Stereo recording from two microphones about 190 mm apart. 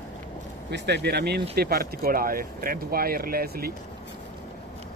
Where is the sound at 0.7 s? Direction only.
65° right (ahead or behind).